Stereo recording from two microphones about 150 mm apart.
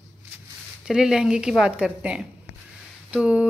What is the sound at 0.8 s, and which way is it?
A woman's voice, 5° right (ahead or behind).